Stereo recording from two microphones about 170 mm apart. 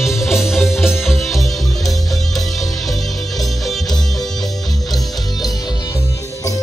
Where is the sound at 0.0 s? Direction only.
Centre (ahead or behind).